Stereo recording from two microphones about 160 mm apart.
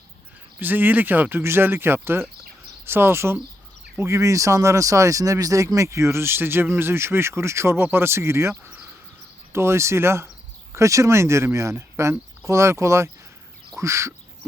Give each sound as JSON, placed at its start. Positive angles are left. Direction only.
{"t": 0.6, "sound": "speech", "side_deg": -10}
{"t": 13.7, "sound": "duck", "side_deg": -20}